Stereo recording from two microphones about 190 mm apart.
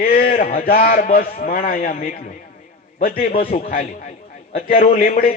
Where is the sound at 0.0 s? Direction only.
50° left (ahead or behind).